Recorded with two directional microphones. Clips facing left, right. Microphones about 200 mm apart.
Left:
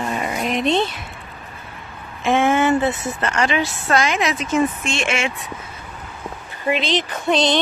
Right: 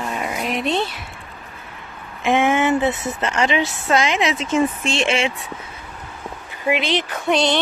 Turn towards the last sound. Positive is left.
turn(degrees=-10)  # may be behind; listen again after turning